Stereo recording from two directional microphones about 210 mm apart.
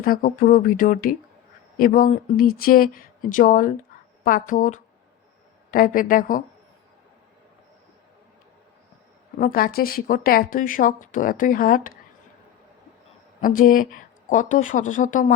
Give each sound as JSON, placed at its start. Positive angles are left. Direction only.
{"t": 0.0, "sound": "speech", "side_deg": 40}
{"t": 9.4, "sound": "speech", "side_deg": 45}
{"t": 13.4, "sound": "speech", "side_deg": 40}